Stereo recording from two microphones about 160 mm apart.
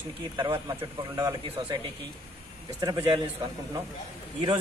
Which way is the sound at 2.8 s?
25° right (ahead or behind).